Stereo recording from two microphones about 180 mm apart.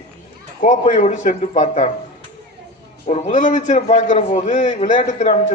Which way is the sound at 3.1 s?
40° left (ahead or behind).